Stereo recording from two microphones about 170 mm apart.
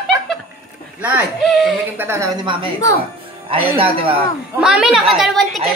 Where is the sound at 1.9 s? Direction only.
15° right (ahead or behind).